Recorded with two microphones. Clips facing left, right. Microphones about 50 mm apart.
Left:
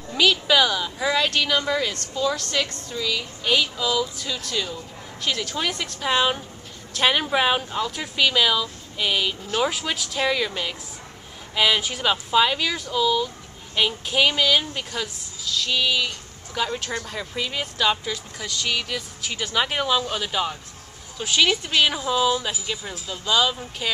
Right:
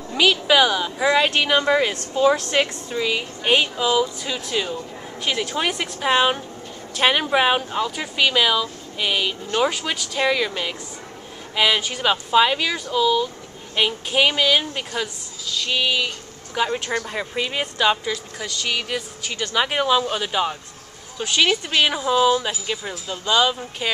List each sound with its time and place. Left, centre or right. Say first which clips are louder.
0.1 s a woman's voice: right 2 dB; centre
18.0 s speech: right 3 dB; centre
19.2 s speech: right 2 dB; centre
19.5 s a woman's voice: right 3 dB; centre